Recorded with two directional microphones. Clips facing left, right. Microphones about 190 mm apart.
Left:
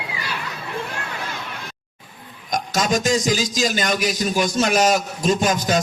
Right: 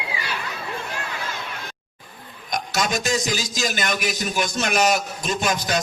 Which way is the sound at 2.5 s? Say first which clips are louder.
Left 3 dB; 40° left (ahead or behind).